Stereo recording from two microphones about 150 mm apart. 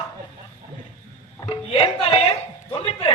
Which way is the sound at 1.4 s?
40° left (ahead or behind).